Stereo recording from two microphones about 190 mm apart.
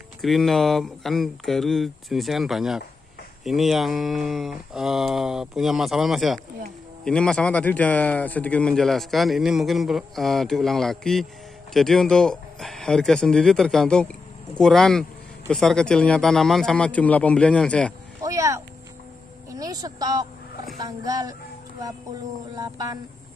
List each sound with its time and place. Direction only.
0.2 s speech: centre (ahead or behind)
18.2 s a sound: 15° right (ahead or behind)
19.5 s a woman's voice: 20° right (ahead or behind)
22.6 s speech: 20° right (ahead or behind)